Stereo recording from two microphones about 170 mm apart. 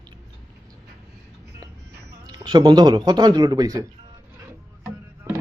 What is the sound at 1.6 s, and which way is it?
Music, 20° right (ahead or behind).